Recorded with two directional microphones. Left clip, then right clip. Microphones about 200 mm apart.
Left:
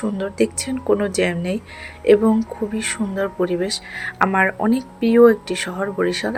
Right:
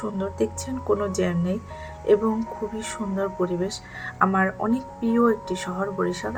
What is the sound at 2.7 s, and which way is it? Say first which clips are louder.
Speech: left 7 dB; 25° left (ahead or behind).